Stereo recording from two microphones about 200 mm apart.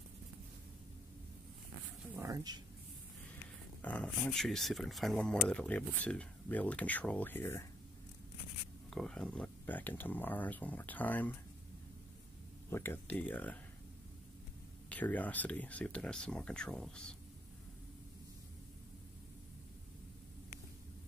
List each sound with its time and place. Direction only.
2.1 s speech: 15° right (ahead or behind)
3.8 s speech: 5° left (ahead or behind)
8.9 s speech: 5° left (ahead or behind)
12.6 s speech: 10° left (ahead or behind)
14.9 s speech: 10° left (ahead or behind)